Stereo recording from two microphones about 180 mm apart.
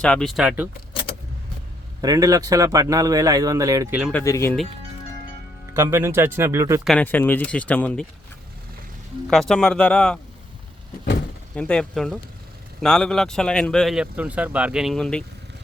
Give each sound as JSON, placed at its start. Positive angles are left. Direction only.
{"t": 0.0, "sound": "speech", "side_deg": 5}
{"t": 2.0, "sound": "a man's voice", "side_deg": -20}
{"t": 4.1, "sound": "speech", "side_deg": 15}
{"t": 5.7, "sound": "speech", "side_deg": -15}
{"t": 6.8, "sound": "speech", "side_deg": 5}
{"t": 9.3, "sound": "speech", "side_deg": 0}
{"t": 11.5, "sound": "speech", "side_deg": 5}